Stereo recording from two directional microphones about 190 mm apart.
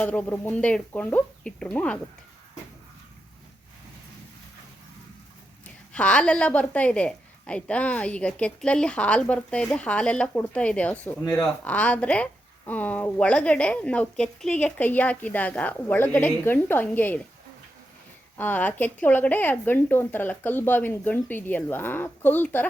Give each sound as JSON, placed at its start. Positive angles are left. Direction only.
{"t": 0.0, "sound": "a woman's voice", "side_deg": 10}
{"t": 5.9, "sound": "a woman's voice", "side_deg": 5}
{"t": 18.3, "sound": "a woman's voice", "side_deg": 10}